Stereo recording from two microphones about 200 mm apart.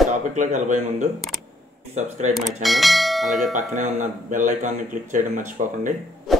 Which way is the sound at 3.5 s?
40° right (ahead or behind).